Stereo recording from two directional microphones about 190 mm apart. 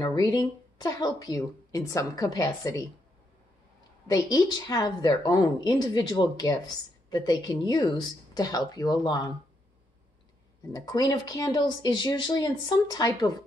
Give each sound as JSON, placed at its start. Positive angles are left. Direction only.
{"t": 0.0, "sound": "speech", "side_deg": 20}
{"t": 4.1, "sound": "speech", "side_deg": 20}
{"t": 10.7, "sound": "speech", "side_deg": 20}